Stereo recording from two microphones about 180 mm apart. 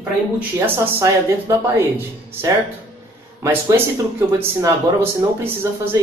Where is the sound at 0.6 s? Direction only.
15° right (ahead or behind).